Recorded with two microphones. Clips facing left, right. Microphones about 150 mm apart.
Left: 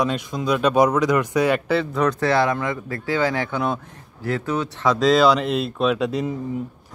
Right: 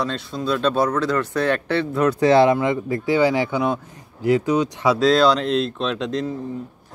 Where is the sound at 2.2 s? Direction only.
20° right (ahead or behind).